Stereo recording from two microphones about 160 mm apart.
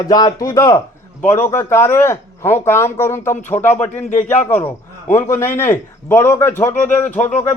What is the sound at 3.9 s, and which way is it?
Speech, 45° left (ahead or behind).